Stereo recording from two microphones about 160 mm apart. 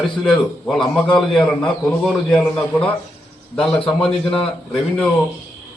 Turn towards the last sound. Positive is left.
turn(degrees=5)  # may be behind; listen again after turning